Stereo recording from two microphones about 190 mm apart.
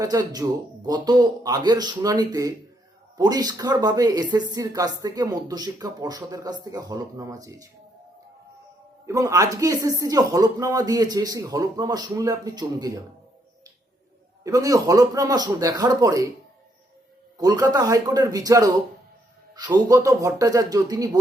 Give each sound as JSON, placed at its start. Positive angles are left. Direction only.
{"t": 0.0, "sound": "a woman's voice", "side_deg": -20}
{"t": 9.0, "sound": "a woman's voice", "side_deg": -15}
{"t": 14.4, "sound": "a woman's voice", "side_deg": -20}
{"t": 17.3, "sound": "a woman's voice", "side_deg": -20}